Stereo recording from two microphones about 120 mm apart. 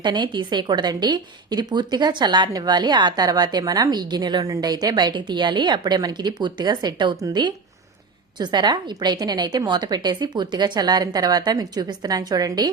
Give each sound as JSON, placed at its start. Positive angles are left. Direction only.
{"t": 0.0, "sound": "a woman's voice", "side_deg": -40}